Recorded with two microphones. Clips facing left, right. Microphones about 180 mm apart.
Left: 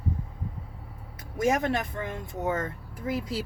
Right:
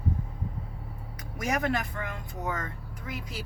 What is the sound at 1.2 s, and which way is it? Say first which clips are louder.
Speech: left 5 dB; 25° left (ahead or behind).